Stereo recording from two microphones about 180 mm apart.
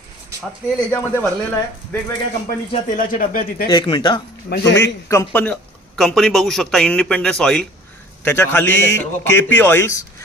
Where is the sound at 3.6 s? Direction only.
25° left (ahead or behind).